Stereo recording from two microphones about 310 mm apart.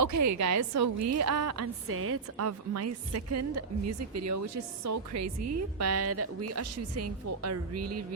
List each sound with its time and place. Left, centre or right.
0.0 s a woman's voice: right